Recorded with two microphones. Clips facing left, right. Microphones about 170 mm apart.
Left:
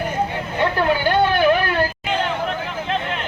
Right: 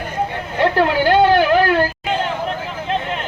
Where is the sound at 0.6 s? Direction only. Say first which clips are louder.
Right 4 dB; 90° right.